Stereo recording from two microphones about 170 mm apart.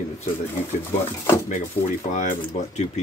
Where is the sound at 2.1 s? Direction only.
50° left (ahead or behind).